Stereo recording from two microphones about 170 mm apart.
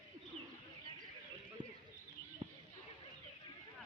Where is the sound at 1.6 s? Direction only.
30° right (ahead or behind).